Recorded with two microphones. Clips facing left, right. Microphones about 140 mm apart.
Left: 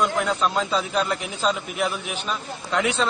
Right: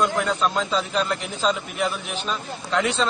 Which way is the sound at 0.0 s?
5° left (ahead or behind).